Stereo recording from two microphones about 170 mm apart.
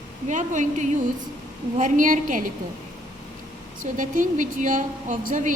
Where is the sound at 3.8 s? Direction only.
50° right (ahead or behind).